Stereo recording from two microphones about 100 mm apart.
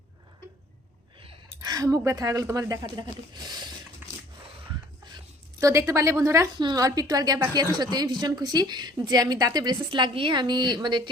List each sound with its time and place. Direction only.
1.6 s speech: 35° right (ahead or behind)
4.0 s scrape: 20° right (ahead or behind)
5.5 s a woman's voice: 35° right (ahead or behind)
6.6 s a woman's voice: 40° right (ahead or behind)